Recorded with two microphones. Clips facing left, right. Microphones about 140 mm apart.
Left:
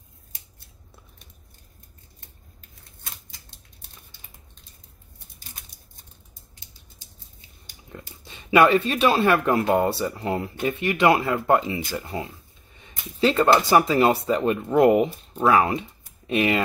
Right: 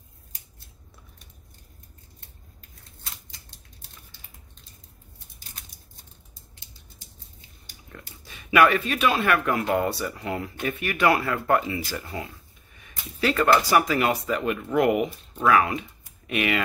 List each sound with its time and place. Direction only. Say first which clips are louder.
7.9 s speech: left 3 dB; 25° left (ahead or behind)